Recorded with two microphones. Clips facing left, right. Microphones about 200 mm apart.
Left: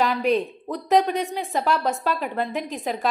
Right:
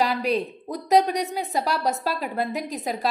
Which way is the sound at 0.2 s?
40° right (ahead or behind).